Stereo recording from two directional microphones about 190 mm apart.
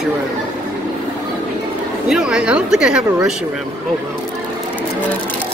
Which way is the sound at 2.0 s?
5° right (ahead or behind).